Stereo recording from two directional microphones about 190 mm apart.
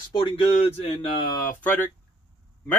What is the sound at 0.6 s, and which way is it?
Speech, 35° left (ahead or behind).